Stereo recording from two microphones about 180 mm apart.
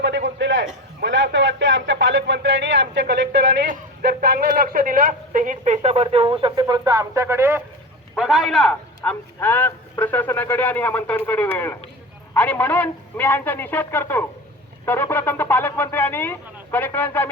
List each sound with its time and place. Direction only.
0.0 s a sound: 80° right
1.0 s speech: 90° right
3.7 s a man's voice: 65° right (ahead or behind); by 7.6 s 15° right (ahead or behind)
8.1 s a man's voice: centre (ahead or behind)
9.0 s speech: 10° left (ahead or behind)